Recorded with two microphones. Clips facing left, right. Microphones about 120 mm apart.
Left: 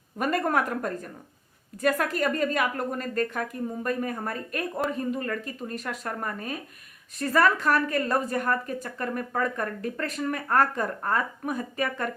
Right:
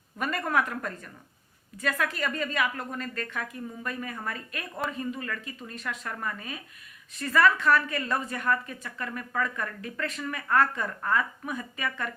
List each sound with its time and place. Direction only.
0.2 s a woman's voice: 45° left (ahead or behind)